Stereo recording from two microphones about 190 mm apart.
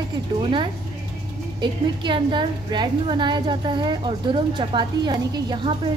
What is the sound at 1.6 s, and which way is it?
A woman's voice, 25° right (ahead or behind).